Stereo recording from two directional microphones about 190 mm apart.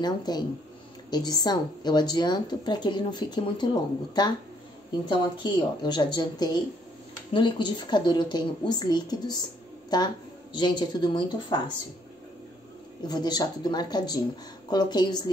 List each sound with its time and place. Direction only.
0.0 s speech: 20° left (ahead or behind)
13.1 s speech: 20° left (ahead or behind)